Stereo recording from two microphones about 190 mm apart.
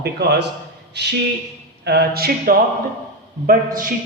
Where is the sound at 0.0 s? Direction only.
60° right (ahead or behind).